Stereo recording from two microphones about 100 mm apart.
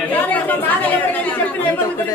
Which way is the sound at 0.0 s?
15° left (ahead or behind).